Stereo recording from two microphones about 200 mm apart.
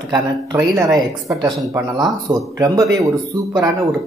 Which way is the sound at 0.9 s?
15° right (ahead or behind).